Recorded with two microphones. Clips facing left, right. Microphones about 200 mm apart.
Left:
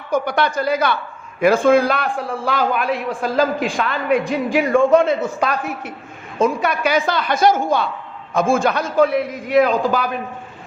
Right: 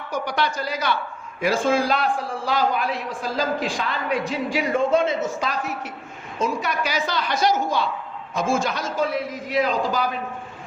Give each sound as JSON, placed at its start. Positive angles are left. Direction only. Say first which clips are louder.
{"t": 0.1, "sound": "a man's voice", "louder": "left 6 dB", "side_deg": 55}